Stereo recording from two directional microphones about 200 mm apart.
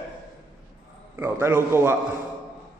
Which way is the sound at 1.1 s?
10° right (ahead or behind).